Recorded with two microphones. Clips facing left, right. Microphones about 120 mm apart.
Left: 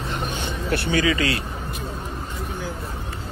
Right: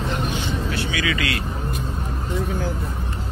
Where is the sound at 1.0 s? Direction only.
35° left (ahead or behind).